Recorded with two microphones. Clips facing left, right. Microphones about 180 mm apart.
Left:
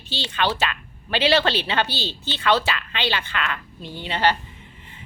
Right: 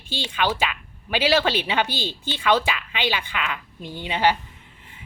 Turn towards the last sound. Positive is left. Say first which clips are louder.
# right 1 dB
turn(degrees=-10)  # may be behind; listen again after turning